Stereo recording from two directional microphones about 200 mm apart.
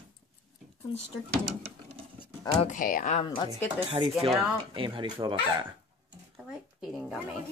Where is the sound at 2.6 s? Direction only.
40° left (ahead or behind).